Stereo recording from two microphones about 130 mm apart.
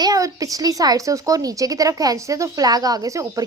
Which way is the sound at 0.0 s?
25° right (ahead or behind).